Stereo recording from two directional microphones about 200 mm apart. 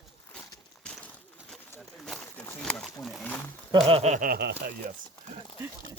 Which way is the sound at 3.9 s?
35° right (ahead or behind).